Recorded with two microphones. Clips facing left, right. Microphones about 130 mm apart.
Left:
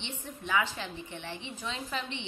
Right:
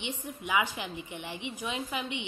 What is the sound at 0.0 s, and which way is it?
A woman's voice, 15° right (ahead or behind).